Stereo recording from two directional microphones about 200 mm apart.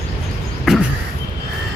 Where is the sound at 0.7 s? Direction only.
Centre (ahead or behind).